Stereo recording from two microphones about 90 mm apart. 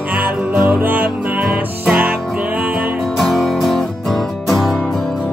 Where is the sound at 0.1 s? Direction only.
15° right (ahead or behind).